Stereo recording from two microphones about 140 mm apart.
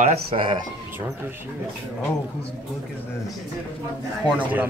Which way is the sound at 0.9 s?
15° right (ahead or behind).